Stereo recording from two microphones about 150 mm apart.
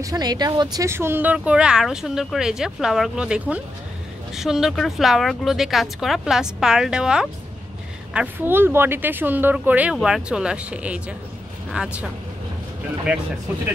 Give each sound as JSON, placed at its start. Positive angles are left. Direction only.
{"t": 0.0, "sound": "speech", "side_deg": -25}